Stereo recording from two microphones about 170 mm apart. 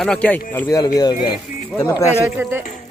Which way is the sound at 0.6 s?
20° left (ahead or behind).